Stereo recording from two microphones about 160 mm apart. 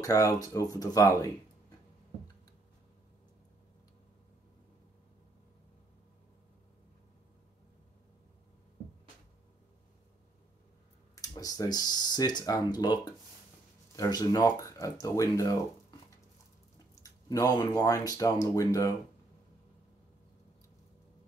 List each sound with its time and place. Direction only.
0.0 s speech: 20° left (ahead or behind)
11.1 s speech: 20° left (ahead or behind)
16.7 s speech: 20° left (ahead or behind)